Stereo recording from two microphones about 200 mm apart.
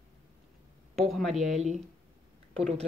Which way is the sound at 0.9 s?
Centre (ahead or behind).